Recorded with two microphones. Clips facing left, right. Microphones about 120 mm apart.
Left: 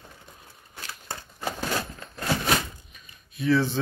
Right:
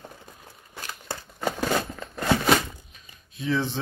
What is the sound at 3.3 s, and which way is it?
Speech, 20° right (ahead or behind).